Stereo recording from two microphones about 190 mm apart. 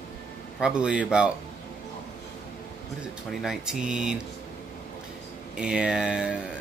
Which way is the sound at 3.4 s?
Centre (ahead or behind).